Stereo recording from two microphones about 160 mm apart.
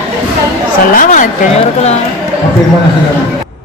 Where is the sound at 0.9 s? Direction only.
55° left (ahead or behind).